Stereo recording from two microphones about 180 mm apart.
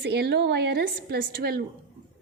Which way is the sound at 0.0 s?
70° right (ahead or behind).